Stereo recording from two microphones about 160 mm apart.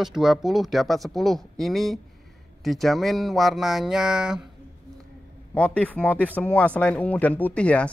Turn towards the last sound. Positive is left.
turn(degrees=10)  # may be behind; listen again after turning